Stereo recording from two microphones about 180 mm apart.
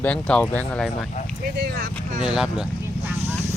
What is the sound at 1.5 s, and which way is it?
Speech, 55° right (ahead or behind).